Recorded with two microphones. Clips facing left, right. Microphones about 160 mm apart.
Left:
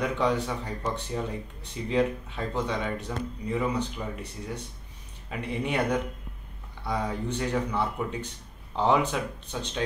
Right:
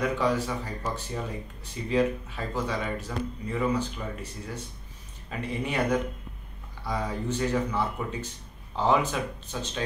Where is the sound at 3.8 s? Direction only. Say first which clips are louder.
Left 1 dB; 65° left (ahead or behind).